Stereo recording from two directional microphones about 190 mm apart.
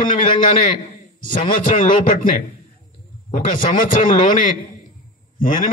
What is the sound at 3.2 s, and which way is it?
A man's voice, 45° left (ahead or behind).